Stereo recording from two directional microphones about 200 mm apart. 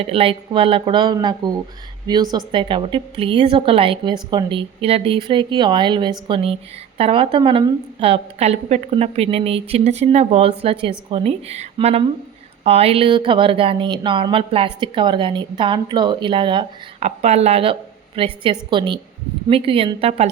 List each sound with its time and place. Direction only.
0.0 s a woman's voice: 30° right (ahead or behind)